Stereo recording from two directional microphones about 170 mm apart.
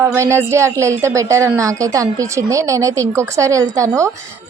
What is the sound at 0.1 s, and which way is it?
A woman's voice, 15° right (ahead or behind).